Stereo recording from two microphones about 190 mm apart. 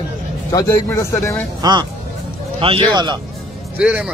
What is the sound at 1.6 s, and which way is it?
Speech, 20° right (ahead or behind).